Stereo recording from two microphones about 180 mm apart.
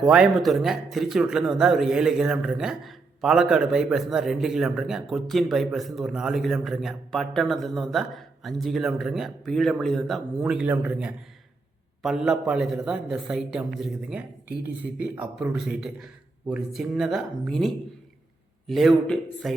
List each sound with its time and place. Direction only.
0.1 s speech: centre (ahead or behind)